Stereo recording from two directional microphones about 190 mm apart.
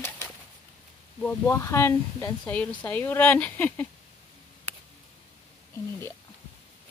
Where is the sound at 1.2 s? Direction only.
15° left (ahead or behind).